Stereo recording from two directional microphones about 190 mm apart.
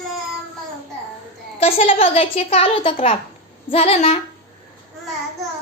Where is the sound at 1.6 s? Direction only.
30° left (ahead or behind).